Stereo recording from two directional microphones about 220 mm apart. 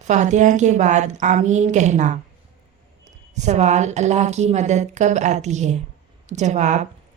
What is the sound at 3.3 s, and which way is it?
Speech, 30° right (ahead or behind).